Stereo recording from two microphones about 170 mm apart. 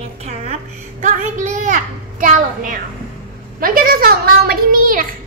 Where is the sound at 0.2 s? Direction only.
40° right (ahead or behind).